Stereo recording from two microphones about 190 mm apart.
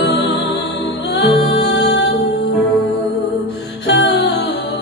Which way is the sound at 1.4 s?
65° left (ahead or behind).